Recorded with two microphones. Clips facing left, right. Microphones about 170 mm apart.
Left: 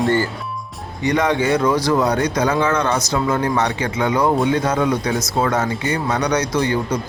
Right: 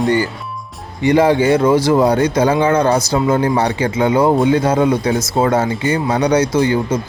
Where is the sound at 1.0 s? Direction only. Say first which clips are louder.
Right 6 dB; 30° right (ahead or behind).